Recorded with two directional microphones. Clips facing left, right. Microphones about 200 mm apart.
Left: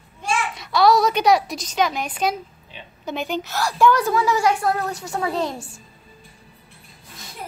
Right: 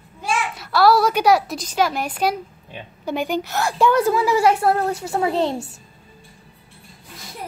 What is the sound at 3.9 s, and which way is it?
A woman's voice, 30° right (ahead or behind).